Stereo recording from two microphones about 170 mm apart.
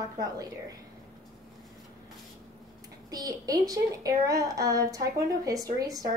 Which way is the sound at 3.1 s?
20° right (ahead or behind).